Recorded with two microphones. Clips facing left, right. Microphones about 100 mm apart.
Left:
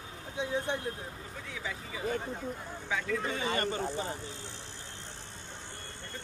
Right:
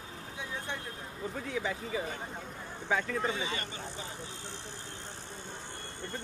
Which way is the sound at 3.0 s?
50° left (ahead or behind).